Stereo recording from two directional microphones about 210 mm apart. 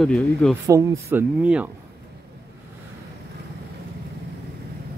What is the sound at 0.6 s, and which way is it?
Speech, 15° right (ahead or behind).